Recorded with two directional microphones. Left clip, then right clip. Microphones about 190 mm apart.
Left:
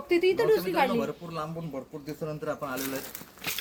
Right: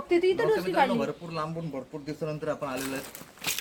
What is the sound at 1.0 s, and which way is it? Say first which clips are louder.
Speech: right 1 dB; 10° right (ahead or behind).